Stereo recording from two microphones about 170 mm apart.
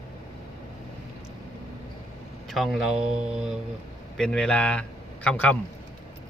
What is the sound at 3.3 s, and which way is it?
A man's voice, 5° right (ahead or behind).